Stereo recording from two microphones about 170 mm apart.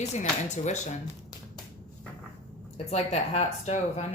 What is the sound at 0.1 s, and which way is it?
Speech, 45° left (ahead or behind).